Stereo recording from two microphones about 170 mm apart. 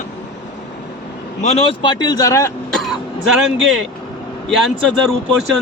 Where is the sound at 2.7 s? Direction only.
Centre (ahead or behind).